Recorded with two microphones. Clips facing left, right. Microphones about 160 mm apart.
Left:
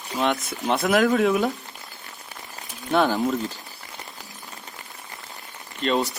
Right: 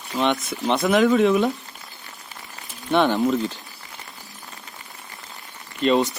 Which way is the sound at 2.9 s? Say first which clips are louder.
Right 2 dB; centre (ahead or behind).